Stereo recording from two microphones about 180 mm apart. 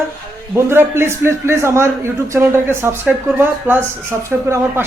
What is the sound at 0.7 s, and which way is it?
A man's voice, 15° right (ahead or behind).